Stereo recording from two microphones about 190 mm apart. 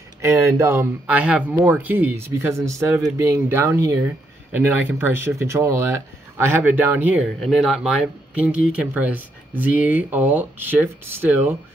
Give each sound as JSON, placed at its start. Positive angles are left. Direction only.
{"t": 0.2, "sound": "speech", "side_deg": -15}
{"t": 7.3, "sound": "speech", "side_deg": 0}